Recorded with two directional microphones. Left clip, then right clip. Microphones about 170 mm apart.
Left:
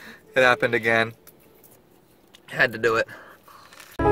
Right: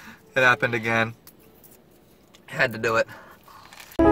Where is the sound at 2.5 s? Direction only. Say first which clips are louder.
Left 2 dB; 20° left (ahead or behind).